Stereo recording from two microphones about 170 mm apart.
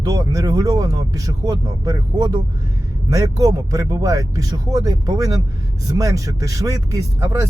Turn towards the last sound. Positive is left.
turn(degrees=-20)  # may be behind; listen again after turning